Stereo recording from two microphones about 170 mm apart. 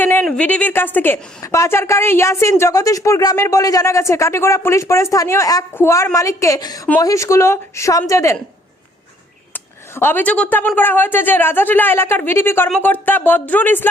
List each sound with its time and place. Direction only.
0.0 s a woman's voice: 10° left (ahead or behind)
9.5 s a woman's voice: 15° left (ahead or behind)